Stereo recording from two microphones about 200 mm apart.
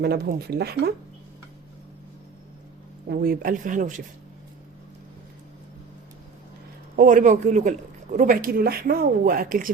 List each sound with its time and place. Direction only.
0.0 s speech: 55° right (ahead or behind)
3.1 s speech: 50° right (ahead or behind)
6.9 s speech: 40° right (ahead or behind)